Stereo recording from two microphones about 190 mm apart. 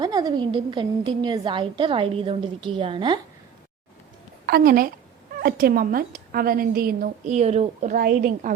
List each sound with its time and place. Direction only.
0.0 s a woman's voice: 20° right (ahead or behind)
4.4 s a woman's voice: 50° right (ahead or behind)